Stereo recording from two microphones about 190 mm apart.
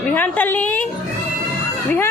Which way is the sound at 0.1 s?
10° left (ahead or behind).